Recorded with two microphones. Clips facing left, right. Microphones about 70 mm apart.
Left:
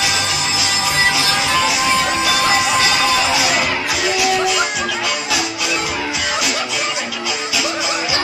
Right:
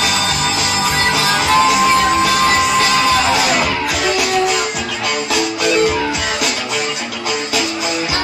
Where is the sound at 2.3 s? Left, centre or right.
Centre.